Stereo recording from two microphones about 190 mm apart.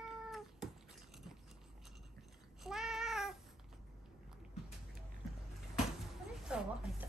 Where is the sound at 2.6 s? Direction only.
Centre (ahead or behind).